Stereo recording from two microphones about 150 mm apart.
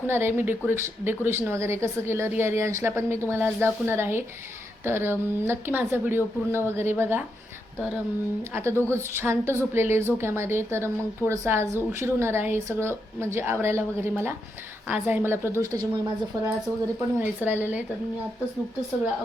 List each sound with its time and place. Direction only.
0.1 s speech: 15° right (ahead or behind)
8.5 s speech: 15° right (ahead or behind)
17.2 s speech: 10° right (ahead or behind)